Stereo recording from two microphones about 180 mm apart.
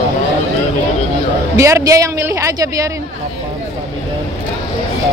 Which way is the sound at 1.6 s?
15° right (ahead or behind).